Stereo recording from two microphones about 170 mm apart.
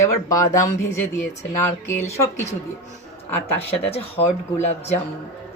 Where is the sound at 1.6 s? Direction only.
15° left (ahead or behind).